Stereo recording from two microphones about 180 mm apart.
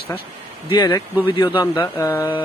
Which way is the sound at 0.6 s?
25° left (ahead or behind).